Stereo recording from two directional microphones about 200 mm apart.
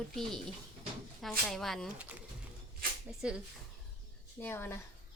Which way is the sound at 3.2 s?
5° right (ahead or behind).